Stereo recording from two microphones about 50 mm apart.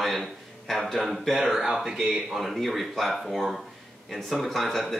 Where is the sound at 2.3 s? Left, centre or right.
Centre.